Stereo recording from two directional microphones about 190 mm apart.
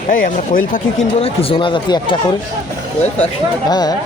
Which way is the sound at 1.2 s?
30° left (ahead or behind).